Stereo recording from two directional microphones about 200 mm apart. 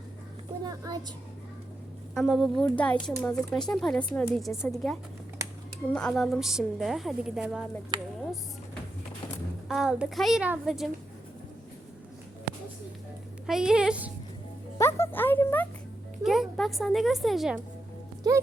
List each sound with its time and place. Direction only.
0.6 s a child's voice: 20° right (ahead or behind)
2.1 s speech: centre (ahead or behind)
7.9 s speech: 20° right (ahead or behind)
9.6 s speech: centre (ahead or behind)
13.5 s speech: 5° right (ahead or behind)
14.8 s music: 15° left (ahead or behind)
16.2 s a woman's voice: centre (ahead or behind)